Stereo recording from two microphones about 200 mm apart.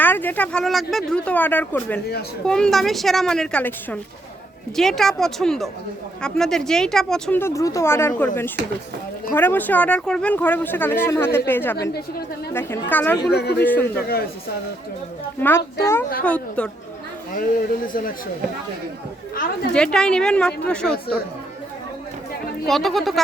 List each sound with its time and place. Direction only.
0.0 s a woman's voice: 10° left (ahead or behind)
9.3 s speech: 10° left (ahead or behind)
13.3 s a man's voice: 55° left (ahead or behind)
13.6 s speech: 10° left (ahead or behind)
13.8 s speech: 50° left (ahead or behind)
15.4 s speech: 10° left (ahead or behind)
17.3 s speech: 45° left (ahead or behind)
19.7 s a woman's voice: 5° left (ahead or behind)
22.6 s a woman's voice: centre (ahead or behind)